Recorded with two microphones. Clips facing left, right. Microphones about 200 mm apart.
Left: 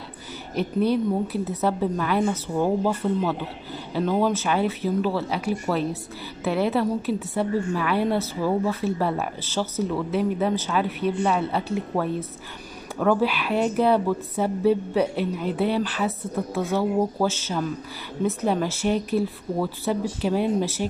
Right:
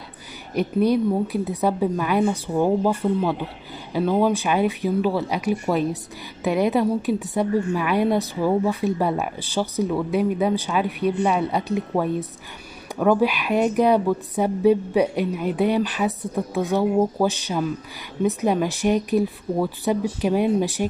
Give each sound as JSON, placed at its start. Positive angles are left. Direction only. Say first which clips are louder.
{"t": 0.6, "sound": "a woman's voice", "louder": "right 3 dB", "side_deg": -10}